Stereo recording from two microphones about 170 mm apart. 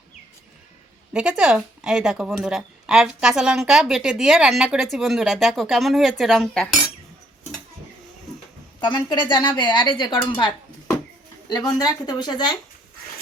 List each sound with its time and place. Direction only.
1.1 s speech: 5° right (ahead or behind)
8.8 s a woman's voice: 25° left (ahead or behind)
11.4 s a woman's voice: 25° left (ahead or behind)